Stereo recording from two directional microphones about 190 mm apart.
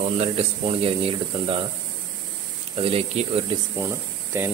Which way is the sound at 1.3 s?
30° right (ahead or behind).